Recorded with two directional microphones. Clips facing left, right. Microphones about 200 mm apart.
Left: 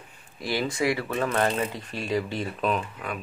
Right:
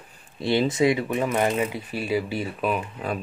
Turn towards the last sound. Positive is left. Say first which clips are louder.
# right 5 dB
turn(degrees=-30)  # may be behind; listen again after turning